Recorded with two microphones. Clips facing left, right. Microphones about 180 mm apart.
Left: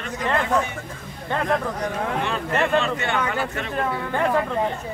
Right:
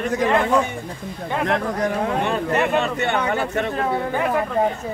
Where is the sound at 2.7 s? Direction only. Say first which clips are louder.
Right 2 dB; 20° right (ahead or behind).